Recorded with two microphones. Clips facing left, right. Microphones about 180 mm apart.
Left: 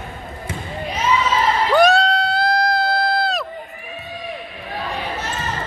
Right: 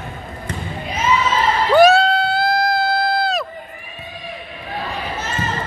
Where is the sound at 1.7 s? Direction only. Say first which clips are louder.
Right 4 dB; 5° right (ahead or behind).